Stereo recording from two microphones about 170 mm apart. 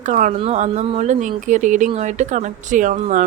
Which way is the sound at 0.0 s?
50° right (ahead or behind).